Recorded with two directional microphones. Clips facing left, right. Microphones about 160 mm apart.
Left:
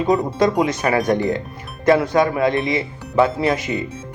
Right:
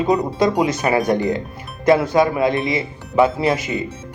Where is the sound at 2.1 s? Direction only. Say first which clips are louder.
Right 1 dB; 25° right (ahead or behind).